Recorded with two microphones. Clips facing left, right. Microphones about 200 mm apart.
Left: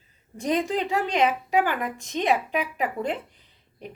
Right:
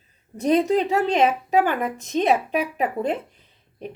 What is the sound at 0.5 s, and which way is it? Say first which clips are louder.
Speech: right 6 dB; 20° right (ahead or behind).